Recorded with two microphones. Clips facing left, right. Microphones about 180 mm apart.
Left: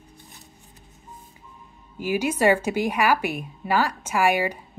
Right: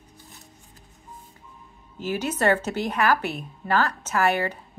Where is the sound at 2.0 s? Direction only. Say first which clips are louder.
Left 3 dB; 10° left (ahead or behind).